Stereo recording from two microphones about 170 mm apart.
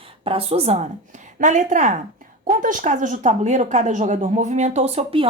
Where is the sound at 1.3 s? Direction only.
50° right (ahead or behind).